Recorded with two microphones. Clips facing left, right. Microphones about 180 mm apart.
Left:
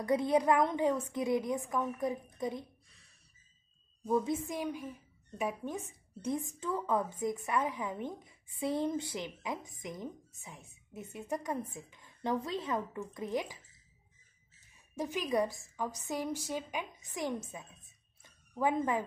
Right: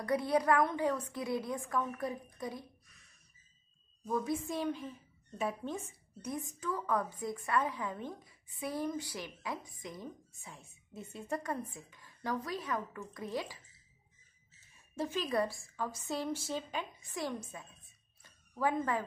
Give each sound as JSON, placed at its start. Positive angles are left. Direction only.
{"t": 0.0, "sound": "a woman's voice", "side_deg": 20}
{"t": 4.0, "sound": "a woman's voice", "side_deg": 25}
{"t": 15.0, "sound": "speech", "side_deg": 15}
{"t": 18.2, "sound": "a sound", "side_deg": 20}